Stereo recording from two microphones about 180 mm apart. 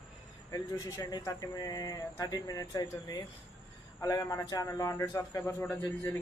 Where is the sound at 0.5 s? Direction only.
20° left (ahead or behind).